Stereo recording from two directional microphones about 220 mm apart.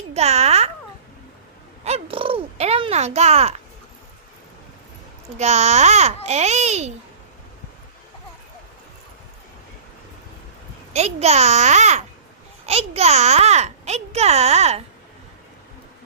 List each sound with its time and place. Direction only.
0.1 s a child's voice: 30° right (ahead or behind)
1.8 s a sound: 25° right (ahead or behind)
5.4 s a child's voice: 30° right (ahead or behind)
10.9 s a child's voice: 30° right (ahead or behind)